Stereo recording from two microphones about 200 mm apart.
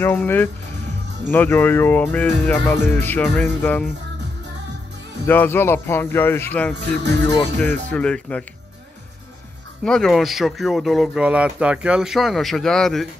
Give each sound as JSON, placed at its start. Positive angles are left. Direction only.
{"t": 0.0, "sound": "speech", "side_deg": 10}
{"t": 5.2, "sound": "speech", "side_deg": 10}
{"t": 6.7, "sound": "speech", "side_deg": -60}
{"t": 7.6, "sound": "speech", "side_deg": 10}
{"t": 9.8, "sound": "speech", "side_deg": 5}